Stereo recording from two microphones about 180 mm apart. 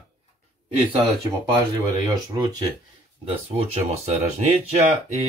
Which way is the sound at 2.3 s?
25° right (ahead or behind).